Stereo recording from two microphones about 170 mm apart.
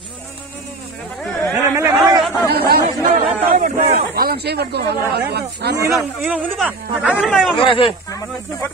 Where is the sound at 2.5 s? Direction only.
70° right (ahead or behind).